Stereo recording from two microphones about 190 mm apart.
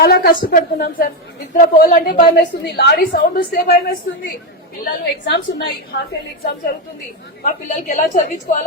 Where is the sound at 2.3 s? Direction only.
60° left (ahead or behind).